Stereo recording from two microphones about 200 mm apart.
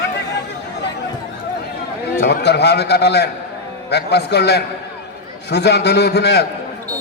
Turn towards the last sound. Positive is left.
turn(degrees=55)  # may be behind; listen again after turning